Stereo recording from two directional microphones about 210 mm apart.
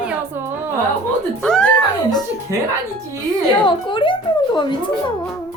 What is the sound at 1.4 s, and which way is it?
Speech, 5° left (ahead or behind).